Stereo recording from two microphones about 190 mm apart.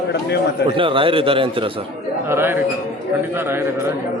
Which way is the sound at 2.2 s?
10° right (ahead or behind).